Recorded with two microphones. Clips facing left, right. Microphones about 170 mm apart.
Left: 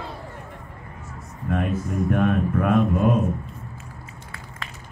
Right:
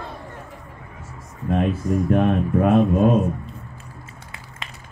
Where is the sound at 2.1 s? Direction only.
25° right (ahead or behind).